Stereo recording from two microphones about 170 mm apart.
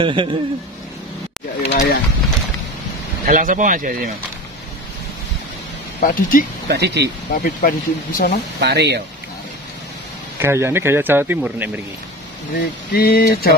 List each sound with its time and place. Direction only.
0.0 s a man's voice: 30° right (ahead or behind)
1.7 s speech: 85° left
3.3 s speech: 50° right (ahead or behind)
5.9 s speech: 55° left (ahead or behind)
6.7 s speech: 75° right (ahead or behind)
7.3 s speech: 55° left (ahead or behind)
8.5 s speech: 80° right
10.4 s speech: 15° right (ahead or behind)
12.5 s speech: 65° left (ahead or behind)